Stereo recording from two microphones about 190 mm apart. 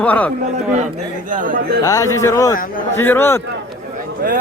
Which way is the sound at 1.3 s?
45° right (ahead or behind).